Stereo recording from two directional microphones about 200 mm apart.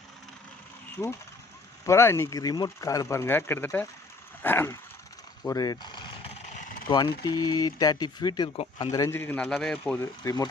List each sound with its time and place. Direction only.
1.0 s speech: 10° left (ahead or behind)
5.5 s a sound: 20° left (ahead or behind); by 6.8 s 40° left (ahead or behind)
6.9 s speech: 20° left (ahead or behind); by 10.1 s 5° left (ahead or behind)